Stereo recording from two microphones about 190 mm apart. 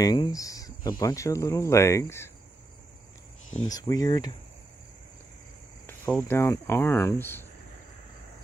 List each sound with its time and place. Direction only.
0.0 s speech: 20° left (ahead or behind)
3.6 s speech: 20° left (ahead or behind)
5.9 s speech: 10° left (ahead or behind)